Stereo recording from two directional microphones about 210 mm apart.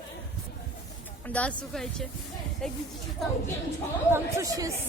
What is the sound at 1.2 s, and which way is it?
A woman's voice, 5° left (ahead or behind).